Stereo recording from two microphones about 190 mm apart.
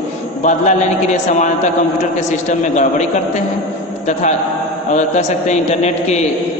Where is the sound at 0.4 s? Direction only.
40° left (ahead or behind).